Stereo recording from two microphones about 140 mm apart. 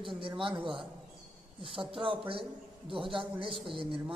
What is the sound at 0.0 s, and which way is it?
A woman's voice, 35° right (ahead or behind).